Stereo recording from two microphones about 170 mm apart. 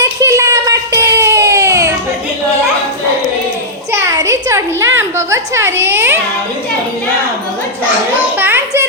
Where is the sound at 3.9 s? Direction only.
15° right (ahead or behind).